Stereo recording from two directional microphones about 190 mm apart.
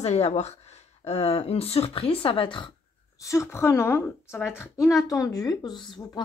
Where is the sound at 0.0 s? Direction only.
35° left (ahead or behind).